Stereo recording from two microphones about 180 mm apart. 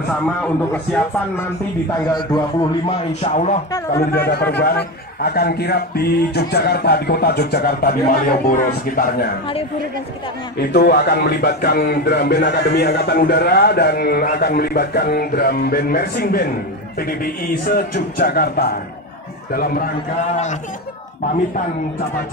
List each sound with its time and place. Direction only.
2.1 s a man's voice: 25° left (ahead or behind)
3.2 s speech: 40° left (ahead or behind)
4.3 s a man's voice: 70° left (ahead or behind)
10.6 s a man's voice: 65° left (ahead or behind)